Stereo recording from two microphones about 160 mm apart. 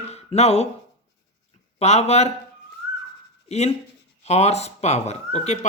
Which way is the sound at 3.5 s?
40° left (ahead or behind).